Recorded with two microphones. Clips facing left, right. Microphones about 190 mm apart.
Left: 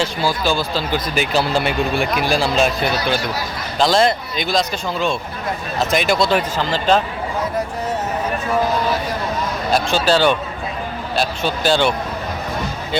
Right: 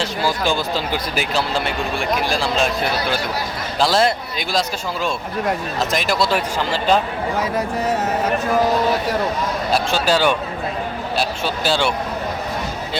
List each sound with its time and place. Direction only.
0.3 s speech: 15° right (ahead or behind)
1.3 s speech: 5° left (ahead or behind)
9.7 s speech: 10° right (ahead or behind)